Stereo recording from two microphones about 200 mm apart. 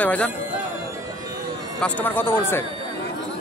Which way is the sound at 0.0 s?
5° left (ahead or behind).